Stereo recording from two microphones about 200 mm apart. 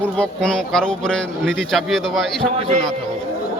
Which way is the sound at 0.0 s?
5° left (ahead or behind).